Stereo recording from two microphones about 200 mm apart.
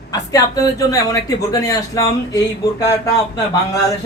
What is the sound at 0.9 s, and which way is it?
Speech, 15° left (ahead or behind).